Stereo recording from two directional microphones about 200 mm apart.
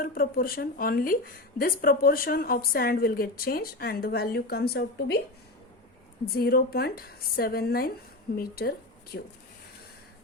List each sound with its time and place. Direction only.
0.0 s speech: 45° left (ahead or behind)
6.3 s speech: 50° left (ahead or behind)